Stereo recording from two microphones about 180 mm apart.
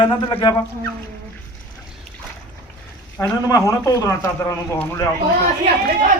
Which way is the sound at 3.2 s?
15° left (ahead or behind).